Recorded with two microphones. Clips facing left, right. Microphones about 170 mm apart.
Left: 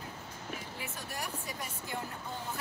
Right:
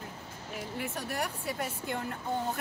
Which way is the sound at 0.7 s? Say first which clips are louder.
Right 7 dB; 60° right (ahead or behind).